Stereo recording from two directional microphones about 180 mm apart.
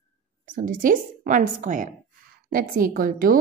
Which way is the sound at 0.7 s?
50° right (ahead or behind).